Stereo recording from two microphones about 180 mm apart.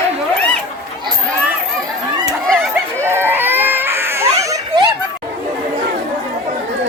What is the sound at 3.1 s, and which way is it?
Baby cry, 10° right (ahead or behind).